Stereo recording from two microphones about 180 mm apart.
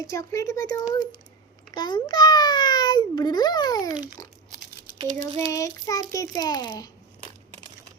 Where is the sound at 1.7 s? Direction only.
25° left (ahead or behind).